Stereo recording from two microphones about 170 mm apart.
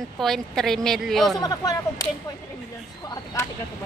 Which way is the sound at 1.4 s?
20° left (ahead or behind).